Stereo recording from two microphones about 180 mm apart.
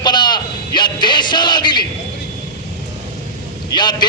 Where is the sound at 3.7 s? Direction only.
25° left (ahead or behind).